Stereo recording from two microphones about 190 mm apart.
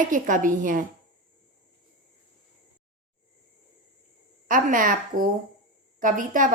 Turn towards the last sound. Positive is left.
turn(degrees=-45)  # may be behind; listen again after turning